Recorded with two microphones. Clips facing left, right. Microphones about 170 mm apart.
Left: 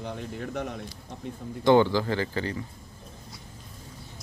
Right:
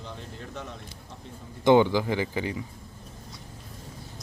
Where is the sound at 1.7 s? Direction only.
15° right (ahead or behind).